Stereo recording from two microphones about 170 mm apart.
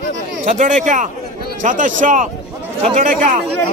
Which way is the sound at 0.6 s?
45° right (ahead or behind).